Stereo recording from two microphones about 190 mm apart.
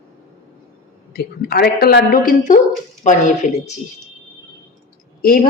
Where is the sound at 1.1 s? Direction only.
55° left (ahead or behind); by 3.7 s 40° left (ahead or behind).